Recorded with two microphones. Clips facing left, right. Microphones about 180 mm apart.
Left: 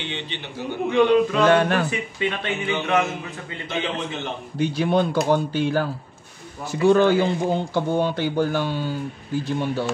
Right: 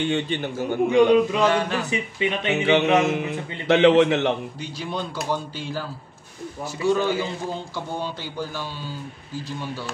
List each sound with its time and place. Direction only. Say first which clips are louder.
0.0 s a man's voice: right 8 dB; 45° right (ahead or behind)
0.9 s speech: even; 15° right (ahead or behind)
1.4 s speech: left 4 dB; 60° left (ahead or behind)
1.9 s speech: right 1 dB; 20° right (ahead or behind)
2.5 s a man's voice: right 6 dB; 70° right (ahead or behind)
4.6 s speech: left 10 dB; 60° left (ahead or behind)